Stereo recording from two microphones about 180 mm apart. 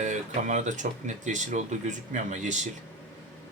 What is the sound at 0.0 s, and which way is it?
Speech, 40° right (ahead or behind).